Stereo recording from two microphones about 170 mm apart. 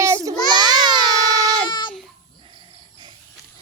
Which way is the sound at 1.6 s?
25° left (ahead or behind).